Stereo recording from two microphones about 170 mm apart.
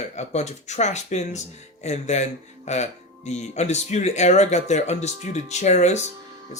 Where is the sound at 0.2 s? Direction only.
40° left (ahead or behind).